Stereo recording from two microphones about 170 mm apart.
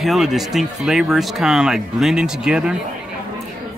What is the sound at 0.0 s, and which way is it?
Speech, centre (ahead or behind).